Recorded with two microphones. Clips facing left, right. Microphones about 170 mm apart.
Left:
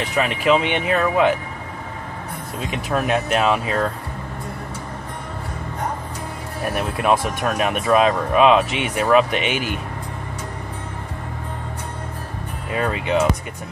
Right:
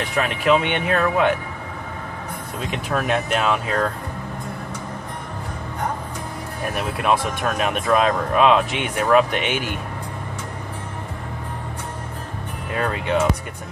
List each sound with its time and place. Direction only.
0.1 s speech: 5° left (ahead or behind)
2.7 s speech: 5° left (ahead or behind)
6.8 s speech: centre (ahead or behind)
12.7 s speech: 5° left (ahead or behind)